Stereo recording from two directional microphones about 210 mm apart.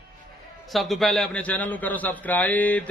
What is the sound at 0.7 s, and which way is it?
A man's voice, centre (ahead or behind).